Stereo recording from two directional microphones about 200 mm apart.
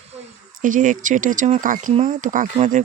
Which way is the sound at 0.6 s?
40° right (ahead or behind).